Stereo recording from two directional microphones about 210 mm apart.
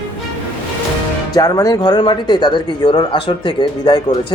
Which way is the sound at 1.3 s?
15° left (ahead or behind).